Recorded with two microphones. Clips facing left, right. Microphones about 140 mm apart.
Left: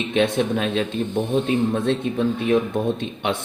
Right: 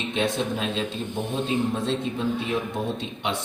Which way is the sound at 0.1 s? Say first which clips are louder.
Left 6 dB; 60° left (ahead or behind).